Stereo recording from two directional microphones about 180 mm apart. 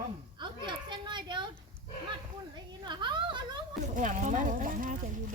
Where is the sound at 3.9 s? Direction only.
45° right (ahead or behind).